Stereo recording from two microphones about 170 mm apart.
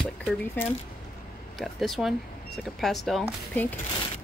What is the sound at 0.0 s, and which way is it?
Speech, 5° left (ahead or behind).